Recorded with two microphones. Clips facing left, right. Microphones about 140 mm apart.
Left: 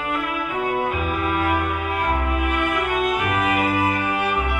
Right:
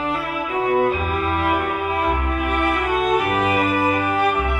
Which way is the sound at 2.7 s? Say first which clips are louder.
Right 4 dB; 35° right (ahead or behind).